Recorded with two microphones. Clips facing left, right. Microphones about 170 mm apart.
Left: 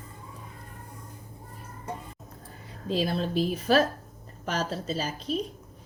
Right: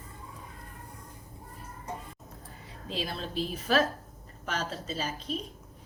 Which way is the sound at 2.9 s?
40° left (ahead or behind).